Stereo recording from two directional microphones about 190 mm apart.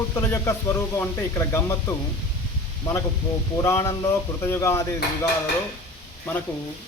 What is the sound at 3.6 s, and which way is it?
Speech, 15° left (ahead or behind).